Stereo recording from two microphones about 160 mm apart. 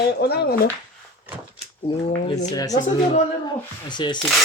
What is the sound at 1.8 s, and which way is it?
Speech, 35° left (ahead or behind).